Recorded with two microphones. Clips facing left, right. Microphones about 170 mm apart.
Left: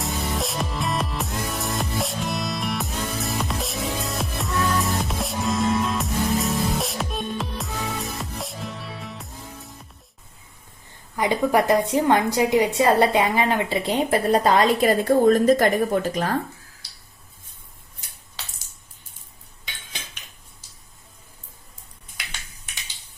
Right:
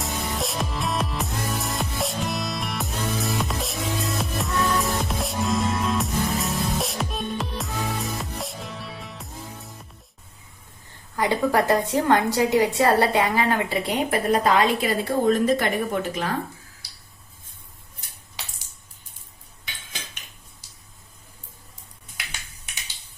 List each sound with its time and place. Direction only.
0.0 s music: centre (ahead or behind)
11.2 s a woman's voice: 15° left (ahead or behind); by 16.3 s 40° left (ahead or behind)
18.4 s a sound: 15° right (ahead or behind)